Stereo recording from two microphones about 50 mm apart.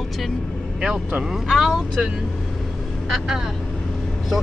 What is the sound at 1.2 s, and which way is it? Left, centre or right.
Speech, centre.